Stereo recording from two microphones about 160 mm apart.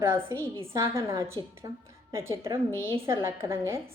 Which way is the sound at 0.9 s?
20° right (ahead or behind).